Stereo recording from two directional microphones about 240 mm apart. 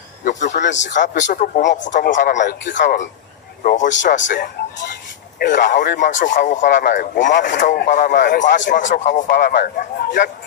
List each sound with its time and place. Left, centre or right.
0.3 s a sound: left
0.6 s a man's voice: left
1.1 s speech: left
9.3 s a man's voice: left